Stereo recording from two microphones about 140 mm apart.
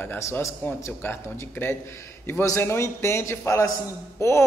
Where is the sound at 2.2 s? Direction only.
20° left (ahead or behind).